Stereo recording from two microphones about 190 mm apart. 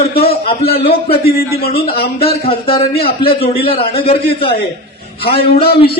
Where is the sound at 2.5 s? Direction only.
30° left (ahead or behind).